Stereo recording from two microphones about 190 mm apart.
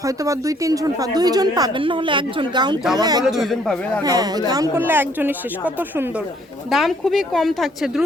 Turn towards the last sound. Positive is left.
turn(degrees=0)  # may be behind; listen again after turning